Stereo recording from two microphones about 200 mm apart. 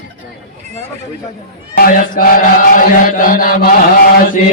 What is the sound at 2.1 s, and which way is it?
Chant, 45° left (ahead or behind).